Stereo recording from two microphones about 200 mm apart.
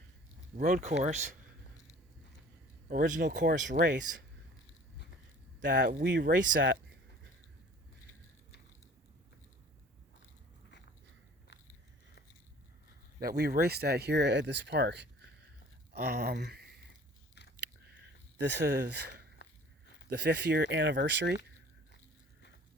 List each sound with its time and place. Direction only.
0.5 s speech: 45° right (ahead or behind)
2.9 s speech: 40° right (ahead or behind)
5.7 s speech: 55° right (ahead or behind)
13.2 s speech: 50° right (ahead or behind)
15.9 s a sound: 55° right (ahead or behind)
18.3 s speech: 60° right (ahead or behind)